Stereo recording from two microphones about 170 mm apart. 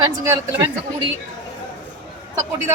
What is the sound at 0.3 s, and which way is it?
Speech, 15° right (ahead or behind).